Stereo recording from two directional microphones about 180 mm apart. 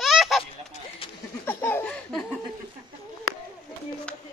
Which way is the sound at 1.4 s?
10° left (ahead or behind).